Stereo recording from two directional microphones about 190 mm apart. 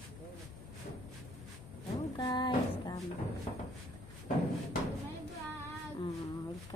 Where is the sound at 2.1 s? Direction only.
25° left (ahead or behind).